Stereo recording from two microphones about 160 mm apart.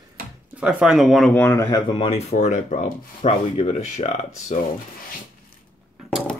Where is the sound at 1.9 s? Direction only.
35° left (ahead or behind).